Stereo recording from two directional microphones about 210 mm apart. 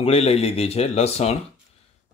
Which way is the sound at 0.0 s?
30° left (ahead or behind).